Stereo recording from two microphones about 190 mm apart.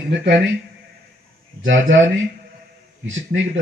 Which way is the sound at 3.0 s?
85° right.